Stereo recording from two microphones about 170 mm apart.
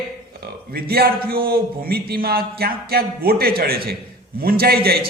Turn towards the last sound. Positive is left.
turn(degrees=-65)  # may be behind; listen again after turning